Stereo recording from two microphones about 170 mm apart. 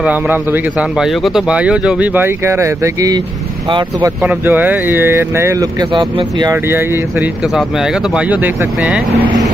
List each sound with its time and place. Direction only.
0.0 s speech: 10° right (ahead or behind); by 4.1 s 30° right (ahead or behind)
4.2 s speech: 10° right (ahead or behind)
7.4 s speech: centre (ahead or behind)